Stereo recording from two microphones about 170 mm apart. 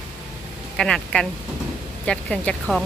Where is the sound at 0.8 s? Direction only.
5° left (ahead or behind).